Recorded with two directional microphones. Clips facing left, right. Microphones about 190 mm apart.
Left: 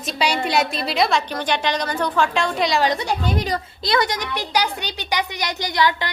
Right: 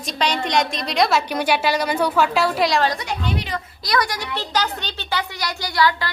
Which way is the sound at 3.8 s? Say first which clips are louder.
Left 2 dB; 25° left (ahead or behind).